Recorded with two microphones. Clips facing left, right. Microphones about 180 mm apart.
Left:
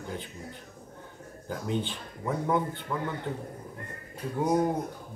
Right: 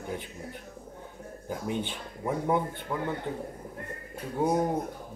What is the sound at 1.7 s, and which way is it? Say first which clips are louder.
Speech: left 2 dB; 15° right (ahead or behind).